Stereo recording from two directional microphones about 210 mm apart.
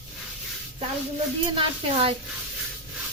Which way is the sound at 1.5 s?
30° right (ahead or behind).